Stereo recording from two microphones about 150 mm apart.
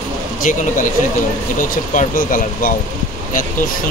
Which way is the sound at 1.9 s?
65° left (ahead or behind).